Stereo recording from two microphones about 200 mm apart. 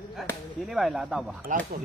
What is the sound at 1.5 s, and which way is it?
Speech, 40° right (ahead or behind).